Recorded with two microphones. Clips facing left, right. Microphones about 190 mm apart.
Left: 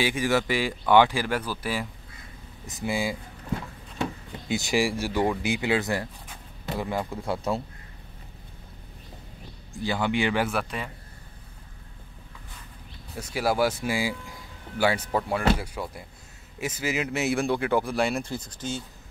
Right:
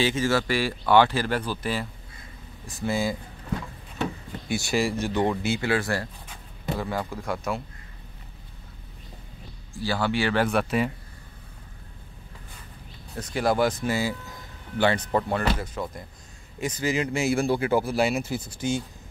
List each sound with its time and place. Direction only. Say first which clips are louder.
0.0 s a man's voice: right 1 dB; 15° left (ahead or behind)
4.5 s a man's voice: even; 15° left (ahead or behind)
9.8 s speech: even; 15° left (ahead or behind)
10.4 s speech: right 5 dB; centre (ahead or behind)
13.1 s a man's voice: right 2 dB; 5° left (ahead or behind); by 18.9 s 10° right (ahead or behind)